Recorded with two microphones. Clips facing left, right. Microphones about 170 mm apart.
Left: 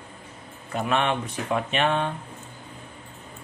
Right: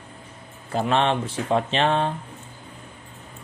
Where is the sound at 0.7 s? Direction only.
30° right (ahead or behind).